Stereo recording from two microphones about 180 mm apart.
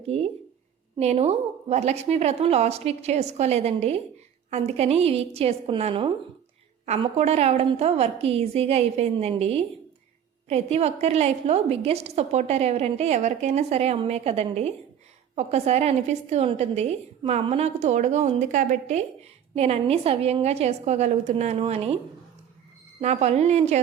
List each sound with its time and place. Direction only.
0.0 s a sound: 35° right (ahead or behind)
0.9 s a woman's voice: 35° right (ahead or behind)
23.0 s a woman's voice: 40° right (ahead or behind)